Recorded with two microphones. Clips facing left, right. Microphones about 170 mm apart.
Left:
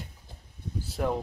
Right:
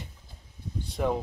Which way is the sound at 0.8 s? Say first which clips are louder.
Right 1 dB; centre (ahead or behind).